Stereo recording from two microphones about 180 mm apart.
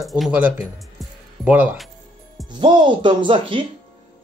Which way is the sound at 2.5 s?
25° right (ahead or behind).